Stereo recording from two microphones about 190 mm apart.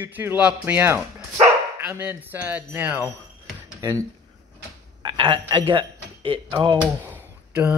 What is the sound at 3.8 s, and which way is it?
Speech, 20° right (ahead or behind).